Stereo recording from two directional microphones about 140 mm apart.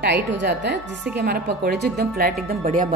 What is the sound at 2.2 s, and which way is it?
Speech, 80° right.